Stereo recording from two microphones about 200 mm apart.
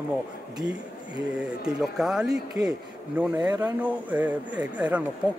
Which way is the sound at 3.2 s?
10° right (ahead or behind).